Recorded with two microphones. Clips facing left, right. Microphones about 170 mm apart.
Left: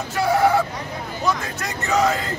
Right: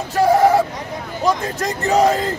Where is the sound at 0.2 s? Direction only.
40° right (ahead or behind).